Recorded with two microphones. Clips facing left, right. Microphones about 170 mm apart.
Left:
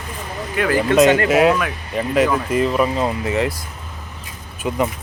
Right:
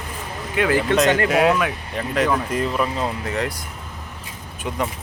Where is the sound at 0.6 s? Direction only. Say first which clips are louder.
Even; 25° right (ahead or behind).